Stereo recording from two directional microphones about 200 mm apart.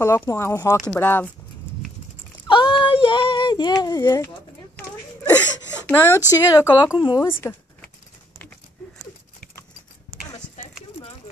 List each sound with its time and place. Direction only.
0.0 s speech: 15° left (ahead or behind)
2.4 s speech: 25° left (ahead or behind)
5.9 s a woman's voice: 10° left (ahead or behind)
7.3 s a sound: 10° left (ahead or behind)